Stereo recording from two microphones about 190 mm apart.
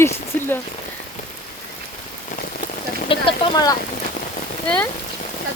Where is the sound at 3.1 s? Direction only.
25° left (ahead or behind).